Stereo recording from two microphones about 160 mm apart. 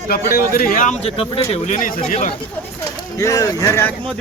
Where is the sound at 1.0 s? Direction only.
35° left (ahead or behind); by 2.3 s 50° left (ahead or behind).